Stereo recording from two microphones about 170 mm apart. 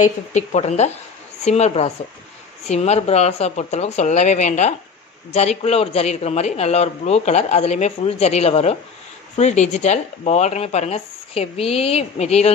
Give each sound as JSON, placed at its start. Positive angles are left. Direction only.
{"t": 0.0, "sound": "a man's voice", "side_deg": 45}